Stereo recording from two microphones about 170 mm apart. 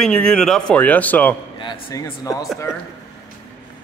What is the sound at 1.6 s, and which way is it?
Speech, 25° left (ahead or behind).